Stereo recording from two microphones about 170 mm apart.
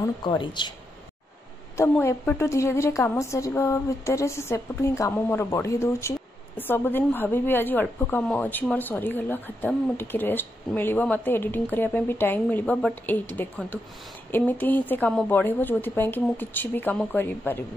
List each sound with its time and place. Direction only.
0.0 s speech: 25° left (ahead or behind)
1.8 s a woman's voice: 15° left (ahead or behind)